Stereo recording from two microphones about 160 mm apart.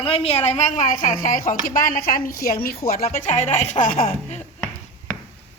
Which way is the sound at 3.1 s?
50° left (ahead or behind).